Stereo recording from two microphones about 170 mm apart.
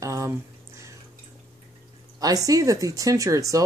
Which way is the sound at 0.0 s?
20° right (ahead or behind).